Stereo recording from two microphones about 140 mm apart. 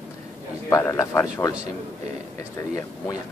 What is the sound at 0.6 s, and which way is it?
Speech, 20° left (ahead or behind).